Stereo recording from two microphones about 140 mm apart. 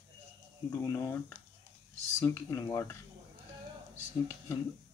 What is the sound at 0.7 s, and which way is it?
Speech, 20° left (ahead or behind).